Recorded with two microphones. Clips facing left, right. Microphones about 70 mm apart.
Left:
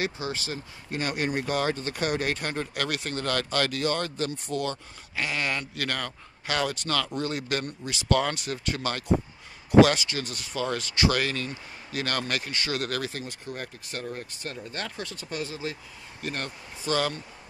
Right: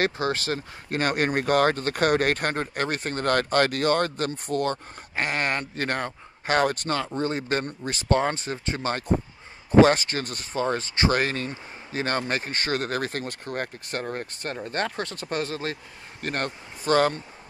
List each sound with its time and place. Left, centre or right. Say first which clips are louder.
0.0 s speech: right 6 dB; right
7.2 s speech: right 3 dB; right
13.1 s speech: right 5 dB; right